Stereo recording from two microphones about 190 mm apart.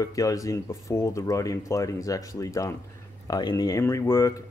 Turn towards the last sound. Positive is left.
turn(degrees=15)  # may be behind; listen again after turning